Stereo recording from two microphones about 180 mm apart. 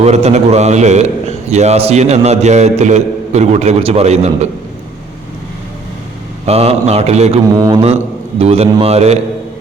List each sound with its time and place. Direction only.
0.0 s a man's voice: 35° right (ahead or behind)
6.4 s a man's voice: 35° right (ahead or behind)
7.5 s mantra: 25° right (ahead or behind)
8.4 s a man's voice: 35° right (ahead or behind)